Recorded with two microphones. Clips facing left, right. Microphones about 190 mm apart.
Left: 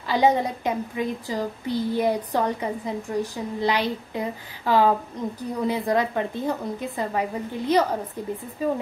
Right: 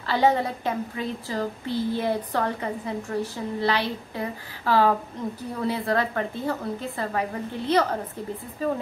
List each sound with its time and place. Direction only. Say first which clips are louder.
0.0 s a woman's voice: left 1 dB; 15° left (ahead or behind)